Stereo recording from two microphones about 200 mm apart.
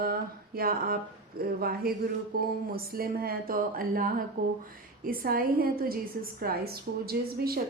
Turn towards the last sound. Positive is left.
turn(degrees=-50)  # may be behind; listen again after turning